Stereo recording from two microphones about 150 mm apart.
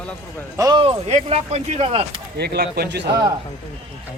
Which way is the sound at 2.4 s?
90° right.